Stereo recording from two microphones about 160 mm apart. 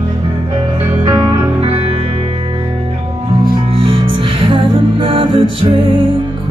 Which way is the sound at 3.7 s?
35° right (ahead or behind).